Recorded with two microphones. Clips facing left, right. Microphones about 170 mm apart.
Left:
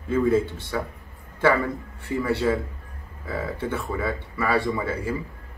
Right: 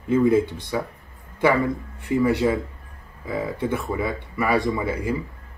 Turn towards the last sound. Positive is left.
turn(degrees=-15)  # may be behind; listen again after turning